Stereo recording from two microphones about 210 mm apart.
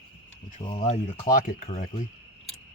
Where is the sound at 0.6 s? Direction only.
25° left (ahead or behind).